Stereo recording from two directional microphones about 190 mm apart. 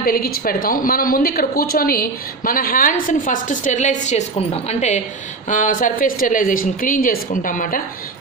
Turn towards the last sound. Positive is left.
turn(degrees=45)  # may be behind; listen again after turning